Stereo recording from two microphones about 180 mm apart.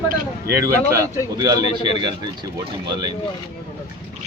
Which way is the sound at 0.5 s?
15° right (ahead or behind).